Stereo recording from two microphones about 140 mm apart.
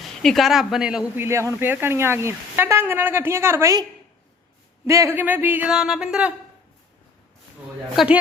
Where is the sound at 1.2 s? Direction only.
20° right (ahead or behind).